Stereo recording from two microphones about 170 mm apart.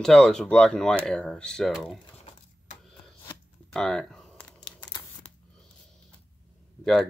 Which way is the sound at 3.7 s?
5° left (ahead or behind).